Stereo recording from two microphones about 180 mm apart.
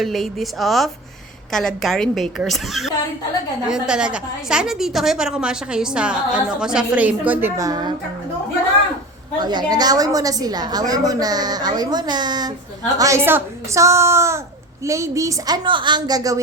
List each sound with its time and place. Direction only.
0.0 s a woman's voice: centre (ahead or behind); by 7.9 s 20° right (ahead or behind)
9.4 s a woman's voice: 25° right (ahead or behind)